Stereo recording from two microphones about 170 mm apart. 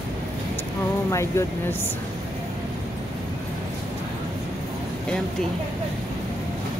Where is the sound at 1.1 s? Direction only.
15° left (ahead or behind).